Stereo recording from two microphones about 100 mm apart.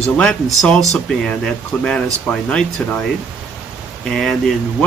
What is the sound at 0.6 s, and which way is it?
Speech, centre (ahead or behind).